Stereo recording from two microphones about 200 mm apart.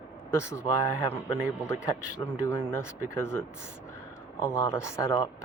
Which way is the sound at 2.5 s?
10° left (ahead or behind).